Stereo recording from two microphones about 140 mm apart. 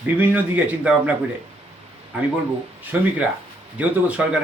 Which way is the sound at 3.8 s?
10° right (ahead or behind).